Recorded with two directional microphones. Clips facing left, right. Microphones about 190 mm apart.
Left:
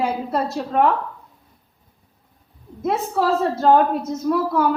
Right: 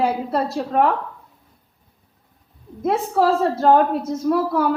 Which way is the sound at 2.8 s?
40° right (ahead or behind).